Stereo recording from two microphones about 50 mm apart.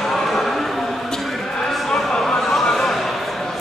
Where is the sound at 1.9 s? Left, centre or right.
Centre.